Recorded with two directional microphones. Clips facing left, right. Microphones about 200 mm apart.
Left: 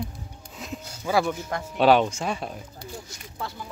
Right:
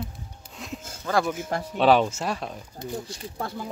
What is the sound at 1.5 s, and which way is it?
Speech, 35° right (ahead or behind).